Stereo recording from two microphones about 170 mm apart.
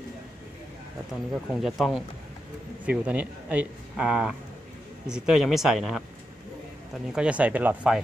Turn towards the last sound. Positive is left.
turn(degrees=-10)  # may be behind; listen again after turning